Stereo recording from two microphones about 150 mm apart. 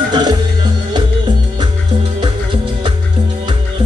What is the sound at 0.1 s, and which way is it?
Music, 30° right (ahead or behind).